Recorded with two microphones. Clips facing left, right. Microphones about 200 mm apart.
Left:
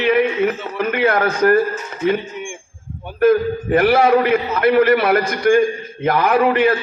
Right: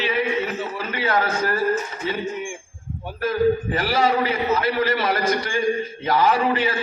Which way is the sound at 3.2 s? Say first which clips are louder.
Left 5 dB; 60° left (ahead or behind).